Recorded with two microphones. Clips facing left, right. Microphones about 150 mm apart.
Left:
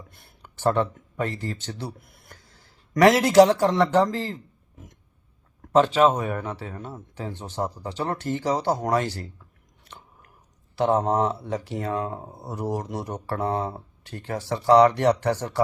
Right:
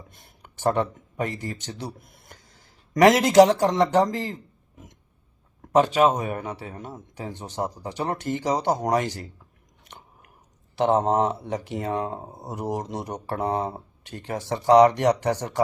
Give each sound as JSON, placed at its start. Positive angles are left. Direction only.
{"t": 0.1, "sound": "a sound", "side_deg": -20}
{"t": 2.9, "sound": "a man's voice", "side_deg": -20}
{"t": 5.7, "sound": "a man's voice", "side_deg": -15}
{"t": 9.8, "sound": "chewing", "side_deg": -15}
{"t": 10.8, "sound": "speech", "side_deg": -20}